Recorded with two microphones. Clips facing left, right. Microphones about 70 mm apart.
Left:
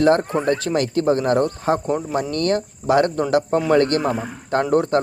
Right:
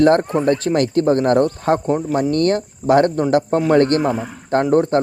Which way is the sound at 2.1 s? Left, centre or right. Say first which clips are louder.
Right 4 dB; right.